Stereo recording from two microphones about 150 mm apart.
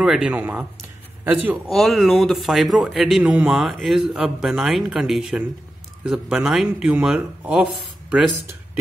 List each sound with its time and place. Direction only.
0.0 s speech: 5° right (ahead or behind)
1.7 s a man's voice: centre (ahead or behind)